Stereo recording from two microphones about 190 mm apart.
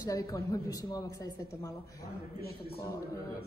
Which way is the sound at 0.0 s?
15° left (ahead or behind).